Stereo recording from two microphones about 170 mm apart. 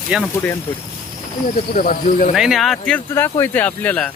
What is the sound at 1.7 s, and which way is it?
Speech, 60° left (ahead or behind).